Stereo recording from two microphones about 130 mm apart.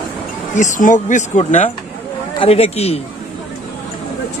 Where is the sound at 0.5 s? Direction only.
75° left (ahead or behind).